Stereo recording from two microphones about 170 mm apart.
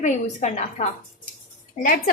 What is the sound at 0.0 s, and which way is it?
Speech, 45° left (ahead or behind).